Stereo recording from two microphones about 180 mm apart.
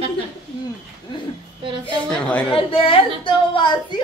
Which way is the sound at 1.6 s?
25° right (ahead or behind).